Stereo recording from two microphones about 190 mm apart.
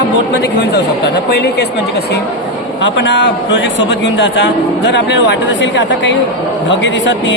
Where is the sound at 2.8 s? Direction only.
70° left (ahead or behind).